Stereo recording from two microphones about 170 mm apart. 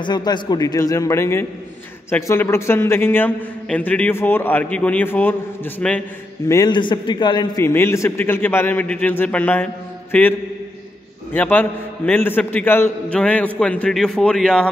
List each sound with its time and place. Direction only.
0.0 s a man's voice: 25° left (ahead or behind); by 6.0 s 10° left (ahead or behind)
6.5 s a man's voice: 25° left (ahead or behind)
7.6 s a man's voice: 15° left (ahead or behind)
11.3 s a man's voice: 10° left (ahead or behind)